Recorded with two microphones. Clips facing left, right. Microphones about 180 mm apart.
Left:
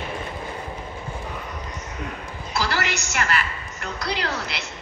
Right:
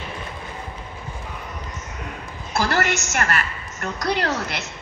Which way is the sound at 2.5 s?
50° right (ahead or behind).